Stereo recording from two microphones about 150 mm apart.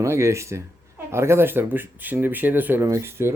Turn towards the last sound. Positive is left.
turn(degrees=-15)  # may be behind; listen again after turning